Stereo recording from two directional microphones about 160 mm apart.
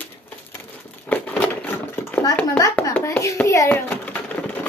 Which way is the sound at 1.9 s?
15° left (ahead or behind).